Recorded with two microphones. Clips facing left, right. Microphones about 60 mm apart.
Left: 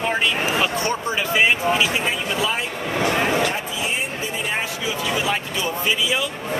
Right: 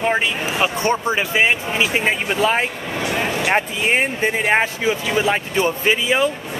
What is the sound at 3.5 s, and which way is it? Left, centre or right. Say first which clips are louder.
Speech: right 7 dB; right.